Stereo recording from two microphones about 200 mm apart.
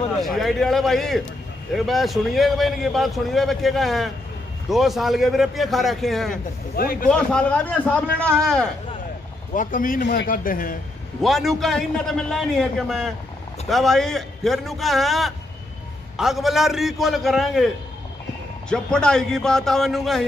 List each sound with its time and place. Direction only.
0.2 s a man's voice: centre (ahead or behind)
6.7 s a man's voice: 45° left (ahead or behind)
7.1 s a man's voice: 5° left (ahead or behind)
9.5 s a man's voice: 40° left (ahead or behind)
10.0 s a man's voice: 55° left (ahead or behind)
11.2 s a man's voice: centre (ahead or behind)
18.7 s a man's voice: 5° left (ahead or behind)